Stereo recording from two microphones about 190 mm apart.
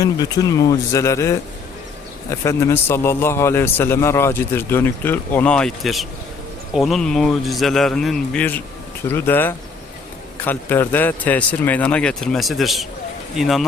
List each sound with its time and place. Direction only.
0.0 s a man's voice: 20° left (ahead or behind); by 13.7 s centre (ahead or behind)